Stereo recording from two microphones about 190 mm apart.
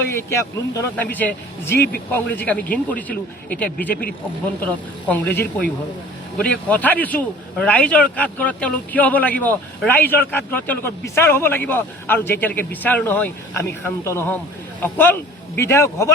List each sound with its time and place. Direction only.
0.0 s a man's voice: 15° left (ahead or behind)
6.4 s a man's voice: 5° left (ahead or behind)